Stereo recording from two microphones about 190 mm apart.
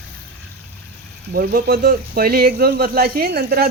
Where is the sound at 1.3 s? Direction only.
50° right (ahead or behind).